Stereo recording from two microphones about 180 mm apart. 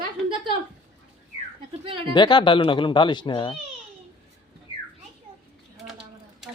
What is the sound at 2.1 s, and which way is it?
Speech, 25° left (ahead or behind).